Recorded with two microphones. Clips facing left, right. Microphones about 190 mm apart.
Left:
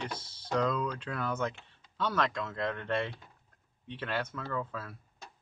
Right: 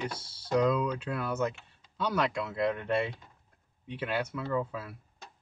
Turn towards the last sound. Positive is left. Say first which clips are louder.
# right 4 dB
turn(degrees=-10)  # may be behind; listen again after turning